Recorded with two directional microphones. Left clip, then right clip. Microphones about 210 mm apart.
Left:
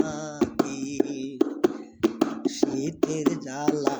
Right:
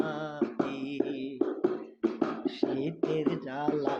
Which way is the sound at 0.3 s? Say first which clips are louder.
Left 8 dB; 55° left (ahead or behind).